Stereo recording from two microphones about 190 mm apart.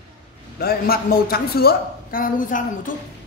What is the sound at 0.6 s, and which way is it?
A woman's voice, 50° left (ahead or behind).